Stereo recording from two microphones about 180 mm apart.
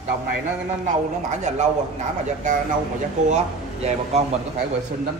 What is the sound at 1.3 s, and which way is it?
Speech, 40° right (ahead or behind).